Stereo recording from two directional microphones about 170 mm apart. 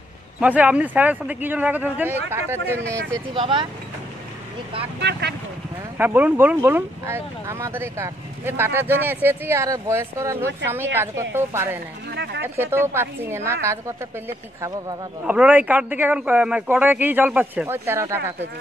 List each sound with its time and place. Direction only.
0.4 s speech: 10° right (ahead or behind)
3.3 s speech: 30° right (ahead or behind)
5.9 s speech: 10° right (ahead or behind)
12.1 s a sound: 80° right
12.5 s speech: 15° right (ahead or behind)